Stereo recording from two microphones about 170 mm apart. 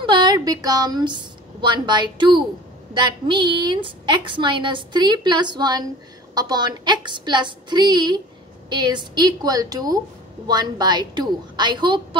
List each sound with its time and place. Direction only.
0.0 s a woman's voice: 25° right (ahead or behind)